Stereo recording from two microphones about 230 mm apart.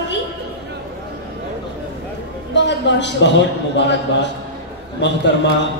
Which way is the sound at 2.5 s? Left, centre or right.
Left.